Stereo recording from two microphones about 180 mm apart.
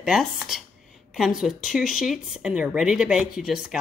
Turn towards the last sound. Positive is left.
turn(degrees=-5)  # may be behind; listen again after turning